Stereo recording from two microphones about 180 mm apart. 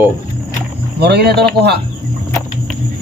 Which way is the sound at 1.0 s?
65° right (ahead or behind).